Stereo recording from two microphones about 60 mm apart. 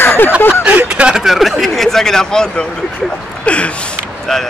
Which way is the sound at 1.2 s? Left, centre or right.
Centre.